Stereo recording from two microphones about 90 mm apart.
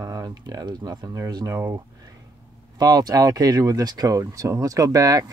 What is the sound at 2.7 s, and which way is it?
Speech, 45° right (ahead or behind).